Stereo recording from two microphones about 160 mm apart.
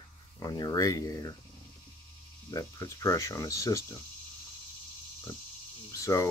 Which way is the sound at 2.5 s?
20° left (ahead or behind).